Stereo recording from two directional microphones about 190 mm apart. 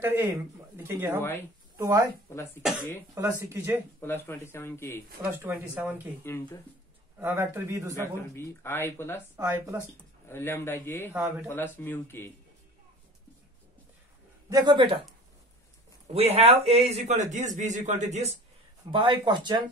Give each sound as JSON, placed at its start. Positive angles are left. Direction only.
{"t": 0.0, "sound": "speech", "side_deg": -10}
{"t": 2.3, "sound": "speech", "side_deg": 15}
{"t": 3.2, "sound": "speech", "side_deg": -10}
{"t": 4.0, "sound": "speech", "side_deg": 10}
{"t": 5.2, "sound": "speech", "side_deg": -10}
{"t": 6.2, "sound": "speech", "side_deg": 10}
{"t": 7.2, "sound": "speech", "side_deg": -10}
{"t": 8.0, "sound": "speech", "side_deg": 10}
{"t": 9.4, "sound": "speech", "side_deg": -15}
{"t": 10.2, "sound": "speech", "side_deg": 10}
{"t": 14.5, "sound": "speech", "side_deg": -25}
{"t": 16.1, "sound": "a man's voice", "side_deg": -35}
{"t": 18.9, "sound": "speech", "side_deg": -25}